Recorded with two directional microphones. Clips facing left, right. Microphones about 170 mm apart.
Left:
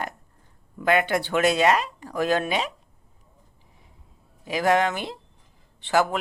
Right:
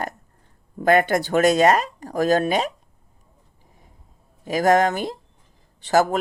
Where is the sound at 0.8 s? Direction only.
45° right (ahead or behind).